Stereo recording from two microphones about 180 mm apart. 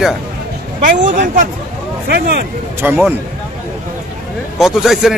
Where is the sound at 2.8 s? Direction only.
10° right (ahead or behind).